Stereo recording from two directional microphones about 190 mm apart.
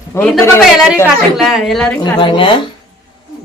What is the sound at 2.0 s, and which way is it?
Speech, 25° left (ahead or behind).